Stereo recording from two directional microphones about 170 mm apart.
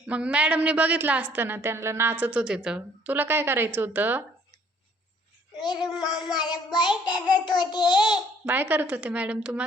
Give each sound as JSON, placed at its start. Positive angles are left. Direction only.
{"t": 0.0, "sound": "a woman's voice", "side_deg": -5}
{"t": 5.7, "sound": "child singing", "side_deg": -5}
{"t": 6.7, "sound": "child singing", "side_deg": 25}
{"t": 8.1, "sound": "a woman's voice", "side_deg": -10}